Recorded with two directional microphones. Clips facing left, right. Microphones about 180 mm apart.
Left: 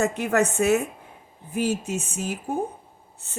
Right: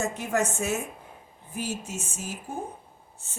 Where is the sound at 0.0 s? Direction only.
65° left (ahead or behind).